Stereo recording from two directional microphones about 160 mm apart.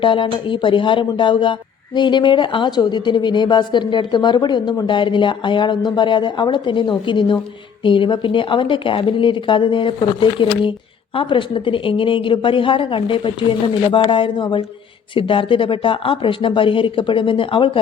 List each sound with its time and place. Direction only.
0.0 s a woman's voice: 30° left (ahead or behind)